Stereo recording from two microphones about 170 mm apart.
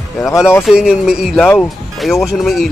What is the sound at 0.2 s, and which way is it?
Speech, 15° left (ahead or behind).